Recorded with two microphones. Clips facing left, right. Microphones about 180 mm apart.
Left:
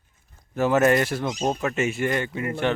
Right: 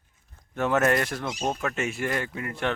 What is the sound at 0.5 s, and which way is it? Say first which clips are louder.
Speech: left 4 dB; 5° left (ahead or behind).